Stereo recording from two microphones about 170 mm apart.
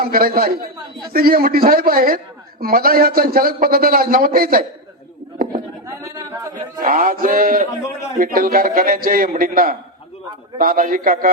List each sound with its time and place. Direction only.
0.0 s a man's voice: 60° right (ahead or behind)
6.7 s a man's voice: 55° right (ahead or behind)